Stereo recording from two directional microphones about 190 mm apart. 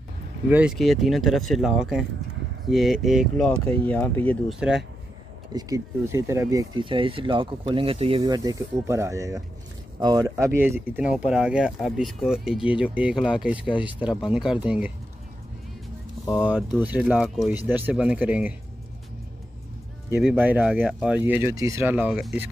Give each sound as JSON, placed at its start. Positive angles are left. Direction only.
{"t": 0.5, "sound": "speech", "side_deg": -5}
{"t": 5.5, "sound": "speech", "side_deg": -20}
{"t": 16.4, "sound": "speech", "side_deg": -10}
{"t": 20.2, "sound": "speech", "side_deg": -10}